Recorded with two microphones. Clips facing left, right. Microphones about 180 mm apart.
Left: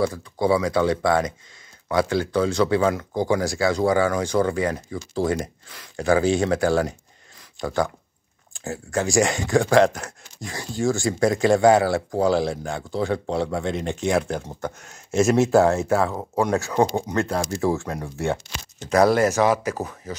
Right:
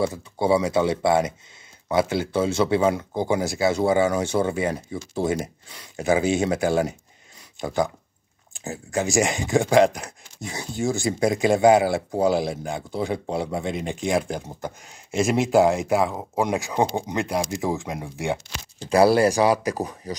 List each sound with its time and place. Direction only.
0.0 s speech: 25° right (ahead or behind)
18.8 s speech: 30° right (ahead or behind)
19.2 s speech: 15° right (ahead or behind)